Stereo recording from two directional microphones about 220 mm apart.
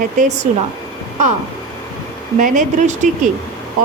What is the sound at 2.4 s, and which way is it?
Speech, 35° right (ahead or behind).